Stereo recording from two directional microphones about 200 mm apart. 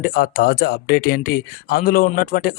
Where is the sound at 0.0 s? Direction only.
45° left (ahead or behind).